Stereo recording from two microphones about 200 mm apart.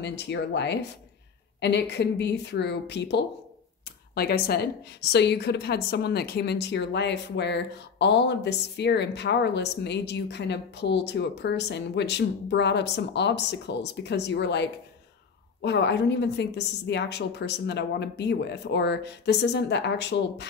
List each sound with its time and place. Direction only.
0.0 s a woman's voice: 60° left (ahead or behind)